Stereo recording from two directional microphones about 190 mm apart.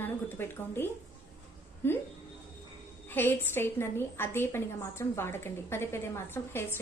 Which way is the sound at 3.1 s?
10° left (ahead or behind).